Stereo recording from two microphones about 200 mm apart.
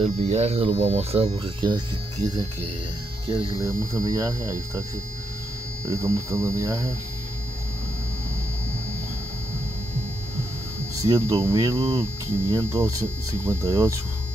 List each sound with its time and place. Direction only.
0.0 s speech: 35° right (ahead or behind)
3.3 s speech: 15° right (ahead or behind)
5.9 s speech: 15° right (ahead or behind)
11.0 s speech: 15° right (ahead or behind)